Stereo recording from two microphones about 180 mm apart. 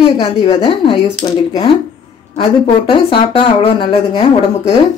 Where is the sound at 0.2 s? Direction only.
30° left (ahead or behind).